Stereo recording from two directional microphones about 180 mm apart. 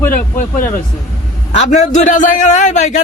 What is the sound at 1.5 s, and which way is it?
A man's voice, 40° left (ahead or behind).